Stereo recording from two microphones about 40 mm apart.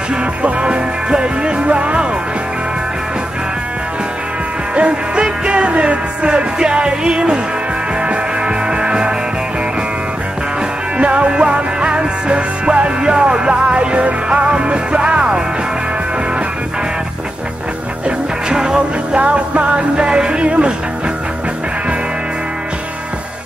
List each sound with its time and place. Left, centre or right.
0.1 s music: right
4.7 s music: right
11.0 s music: right
18.0 s music: centre
19.1 s music: right